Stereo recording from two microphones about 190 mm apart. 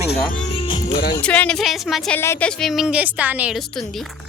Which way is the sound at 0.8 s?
55° left (ahead or behind).